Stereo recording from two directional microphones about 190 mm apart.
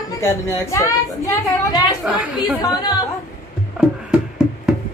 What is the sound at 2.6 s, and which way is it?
Speech, 20° left (ahead or behind).